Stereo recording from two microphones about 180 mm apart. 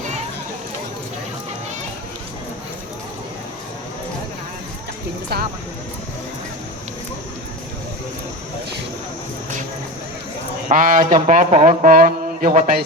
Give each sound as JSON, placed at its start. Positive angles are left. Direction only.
{"t": 10.7, "sound": "speech", "side_deg": -50}